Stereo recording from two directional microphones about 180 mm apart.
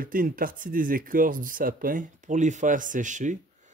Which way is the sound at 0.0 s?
50° right (ahead or behind).